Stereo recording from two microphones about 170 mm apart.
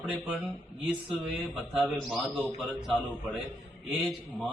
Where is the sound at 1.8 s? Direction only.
Centre (ahead or behind).